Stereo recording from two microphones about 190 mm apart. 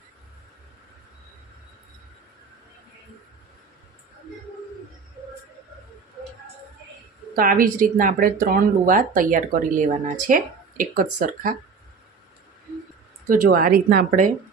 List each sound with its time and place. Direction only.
7.3 s speech: 50° right (ahead or behind)
13.2 s speech: 45° right (ahead or behind)